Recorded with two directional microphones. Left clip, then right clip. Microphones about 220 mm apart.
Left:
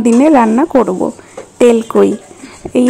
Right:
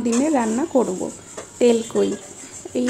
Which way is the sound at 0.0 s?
30° left (ahead or behind).